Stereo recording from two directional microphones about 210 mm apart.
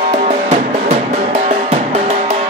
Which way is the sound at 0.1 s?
30° right (ahead or behind).